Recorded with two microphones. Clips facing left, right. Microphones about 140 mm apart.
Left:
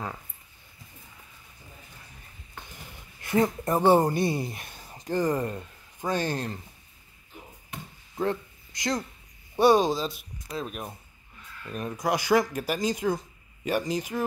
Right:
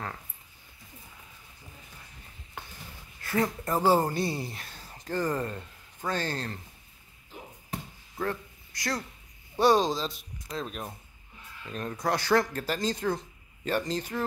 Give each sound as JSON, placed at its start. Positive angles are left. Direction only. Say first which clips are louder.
{"t": 3.2, "sound": "speech", "louder": "left 4 dB", "side_deg": 20}
{"t": 8.2, "sound": "a sound", "louder": "left 4 dB", "side_deg": 20}
{"t": 9.6, "sound": "speech", "louder": "left 3 dB", "side_deg": 10}